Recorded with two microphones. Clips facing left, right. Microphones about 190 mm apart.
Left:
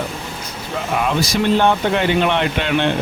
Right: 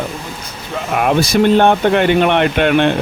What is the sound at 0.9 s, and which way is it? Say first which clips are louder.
Speech: right 6 dB; 60° right (ahead or behind).